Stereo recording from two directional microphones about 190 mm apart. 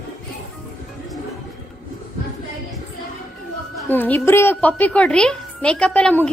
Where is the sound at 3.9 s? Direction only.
10° left (ahead or behind).